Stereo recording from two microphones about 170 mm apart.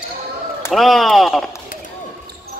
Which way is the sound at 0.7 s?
Centre (ahead or behind).